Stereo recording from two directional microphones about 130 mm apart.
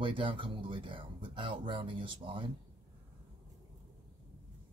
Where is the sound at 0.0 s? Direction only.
40° right (ahead or behind).